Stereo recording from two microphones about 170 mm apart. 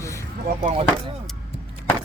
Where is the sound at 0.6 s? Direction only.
35° right (ahead or behind).